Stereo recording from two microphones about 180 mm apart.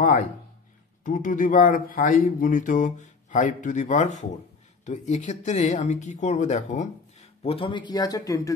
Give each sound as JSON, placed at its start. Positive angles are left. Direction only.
{"t": 1.0, "sound": "speech", "side_deg": 45}